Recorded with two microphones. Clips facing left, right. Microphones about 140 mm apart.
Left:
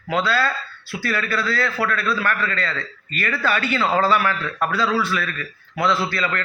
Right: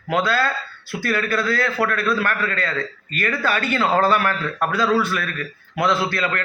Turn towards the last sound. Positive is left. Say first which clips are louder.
# right 1 dB
turn(degrees=-50)  # may be behind; listen again after turning